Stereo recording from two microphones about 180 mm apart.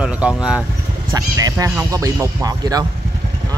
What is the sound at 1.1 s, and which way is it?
Speech, 20° right (ahead or behind).